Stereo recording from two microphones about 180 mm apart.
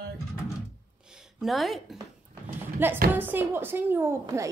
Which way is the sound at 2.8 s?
10° right (ahead or behind).